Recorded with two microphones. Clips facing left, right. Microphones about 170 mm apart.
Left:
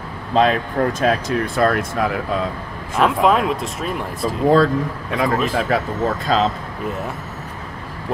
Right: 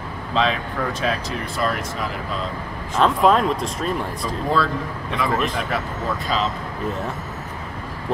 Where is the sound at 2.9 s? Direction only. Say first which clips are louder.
Left 1 dB; 5° left (ahead or behind).